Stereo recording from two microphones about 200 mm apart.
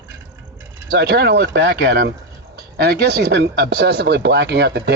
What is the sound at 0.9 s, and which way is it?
Speech, 55° right (ahead or behind).